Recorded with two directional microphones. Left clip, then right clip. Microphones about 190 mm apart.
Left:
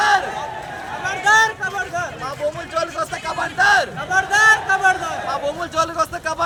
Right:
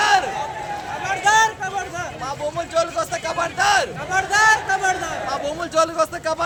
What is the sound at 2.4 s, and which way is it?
A man's voice, 35° right (ahead or behind).